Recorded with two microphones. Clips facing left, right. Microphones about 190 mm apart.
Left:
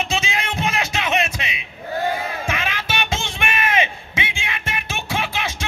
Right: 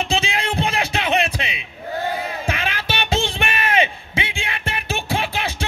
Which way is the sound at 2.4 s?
35° right (ahead or behind).